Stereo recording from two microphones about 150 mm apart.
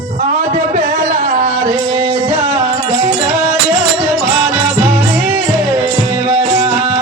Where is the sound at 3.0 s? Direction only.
10° right (ahead or behind).